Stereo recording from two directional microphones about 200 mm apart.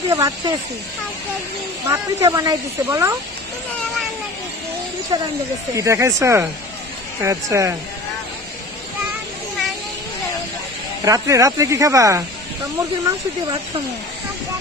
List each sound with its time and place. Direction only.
0.1 s speech: 15° right (ahead or behind)
1.9 s speech: 15° right (ahead or behind)
5.1 s speech: 20° right (ahead or behind)
11.1 s speech: 15° right (ahead or behind)